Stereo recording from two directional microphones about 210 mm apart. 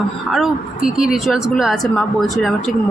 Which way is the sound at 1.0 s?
Centre (ahead or behind).